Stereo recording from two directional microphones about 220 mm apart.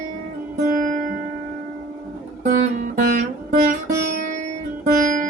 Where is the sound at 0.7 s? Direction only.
35° right (ahead or behind).